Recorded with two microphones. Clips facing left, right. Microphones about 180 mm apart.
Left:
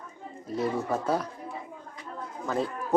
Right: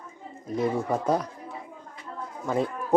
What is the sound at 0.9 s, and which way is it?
Speech, 15° right (ahead or behind).